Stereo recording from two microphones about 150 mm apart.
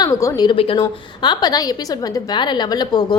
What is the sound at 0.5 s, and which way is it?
A woman's voice, 35° left (ahead or behind).